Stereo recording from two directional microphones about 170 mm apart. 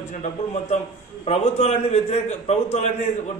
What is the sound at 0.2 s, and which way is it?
A man's voice, 40° left (ahead or behind).